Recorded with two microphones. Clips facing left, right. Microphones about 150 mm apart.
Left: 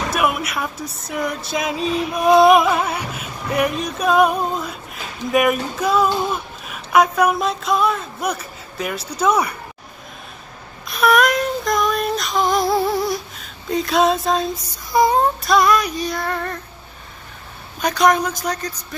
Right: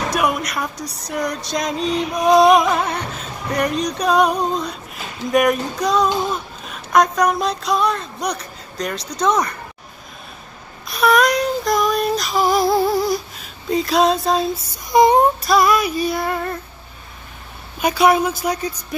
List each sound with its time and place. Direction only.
0.1 s music: 5° left (ahead or behind)
6.3 s speech: 5° left (ahead or behind)
10.9 s child singing: centre (ahead or behind)
14.9 s speech: 20° right (ahead or behind)
15.4 s female singing: 5° right (ahead or behind)
17.7 s female singing: 10° right (ahead or behind)